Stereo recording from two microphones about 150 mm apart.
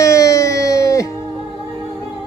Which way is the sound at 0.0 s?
20° left (ahead or behind).